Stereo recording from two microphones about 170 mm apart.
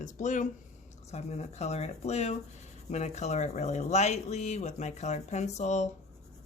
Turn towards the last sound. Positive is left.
turn(degrees=40)  # may be behind; listen again after turning